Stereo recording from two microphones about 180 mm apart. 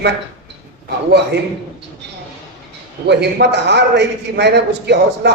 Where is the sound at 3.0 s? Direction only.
70° right (ahead or behind).